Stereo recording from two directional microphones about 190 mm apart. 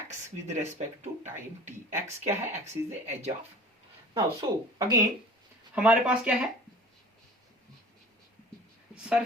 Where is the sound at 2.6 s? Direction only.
35° right (ahead or behind).